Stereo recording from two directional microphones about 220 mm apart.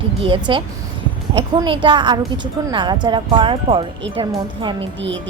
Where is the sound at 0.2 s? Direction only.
20° right (ahead or behind).